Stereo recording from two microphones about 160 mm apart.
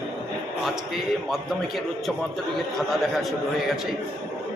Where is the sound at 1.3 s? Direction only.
Centre (ahead or behind).